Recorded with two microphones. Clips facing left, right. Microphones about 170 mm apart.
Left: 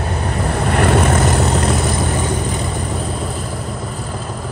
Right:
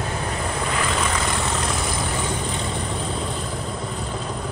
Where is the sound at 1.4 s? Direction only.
60° left (ahead or behind).